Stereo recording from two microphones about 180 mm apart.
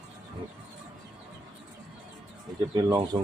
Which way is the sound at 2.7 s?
20° right (ahead or behind).